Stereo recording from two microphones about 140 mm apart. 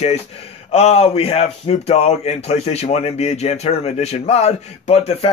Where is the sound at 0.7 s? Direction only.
50° left (ahead or behind).